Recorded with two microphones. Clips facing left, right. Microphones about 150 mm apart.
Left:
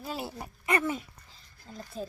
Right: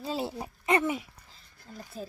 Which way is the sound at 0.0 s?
30° right (ahead or behind).